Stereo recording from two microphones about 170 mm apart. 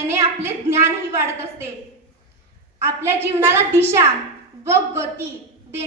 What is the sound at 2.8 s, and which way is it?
A woman's voice, 15° right (ahead or behind).